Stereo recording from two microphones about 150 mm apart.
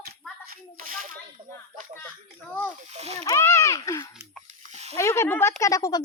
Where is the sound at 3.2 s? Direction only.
20° left (ahead or behind).